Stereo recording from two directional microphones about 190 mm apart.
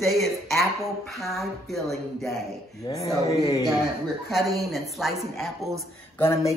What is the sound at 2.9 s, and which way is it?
Speech, 15° left (ahead or behind).